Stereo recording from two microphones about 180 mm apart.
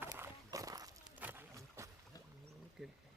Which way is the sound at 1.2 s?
10° right (ahead or behind).